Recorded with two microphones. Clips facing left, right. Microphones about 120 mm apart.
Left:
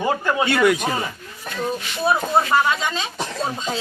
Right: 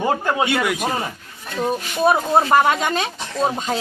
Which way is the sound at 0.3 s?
15° right (ahead or behind).